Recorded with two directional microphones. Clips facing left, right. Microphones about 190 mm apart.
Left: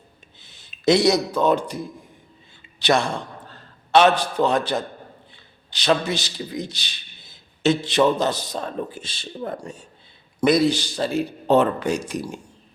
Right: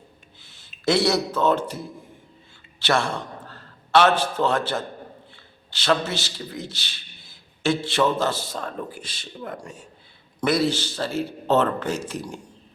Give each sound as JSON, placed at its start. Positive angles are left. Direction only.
{"t": 0.4, "sound": "a man's voice", "side_deg": 20}
{"t": 10.4, "sound": "a man's voice", "side_deg": 15}